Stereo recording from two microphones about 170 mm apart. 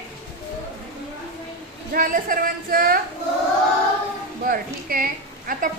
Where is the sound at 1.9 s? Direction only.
55° right (ahead or behind).